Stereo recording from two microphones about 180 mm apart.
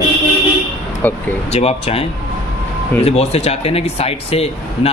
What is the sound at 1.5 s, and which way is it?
Speech, 35° left (ahead or behind).